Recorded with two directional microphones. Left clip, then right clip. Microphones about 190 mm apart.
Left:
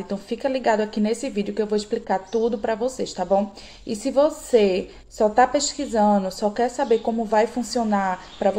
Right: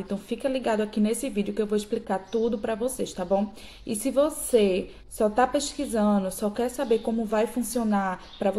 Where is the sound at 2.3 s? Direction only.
15° right (ahead or behind).